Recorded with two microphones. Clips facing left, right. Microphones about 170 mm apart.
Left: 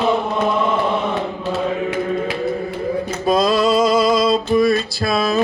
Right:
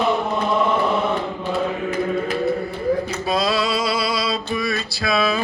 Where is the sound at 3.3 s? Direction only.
50° left (ahead or behind).